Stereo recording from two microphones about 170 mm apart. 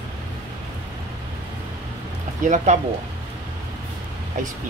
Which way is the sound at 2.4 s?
45° right (ahead or behind).